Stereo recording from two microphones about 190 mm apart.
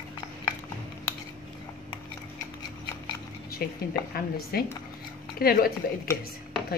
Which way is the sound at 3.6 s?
50° left (ahead or behind).